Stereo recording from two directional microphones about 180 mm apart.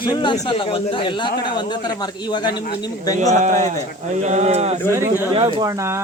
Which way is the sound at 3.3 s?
45° right (ahead or behind).